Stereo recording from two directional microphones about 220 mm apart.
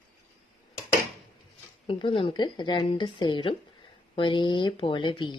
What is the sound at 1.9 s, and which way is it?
Speech, 25° left (ahead or behind).